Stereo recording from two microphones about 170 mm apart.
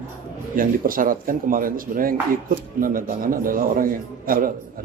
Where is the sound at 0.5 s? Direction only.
55° right (ahead or behind).